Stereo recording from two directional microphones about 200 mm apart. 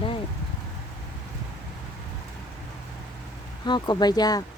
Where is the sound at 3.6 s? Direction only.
20° left (ahead or behind).